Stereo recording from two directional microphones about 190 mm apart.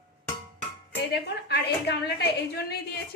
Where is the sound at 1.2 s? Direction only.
60° left (ahead or behind).